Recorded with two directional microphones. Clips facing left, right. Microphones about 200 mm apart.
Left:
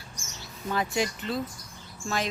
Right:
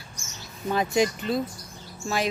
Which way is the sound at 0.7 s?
20° right (ahead or behind).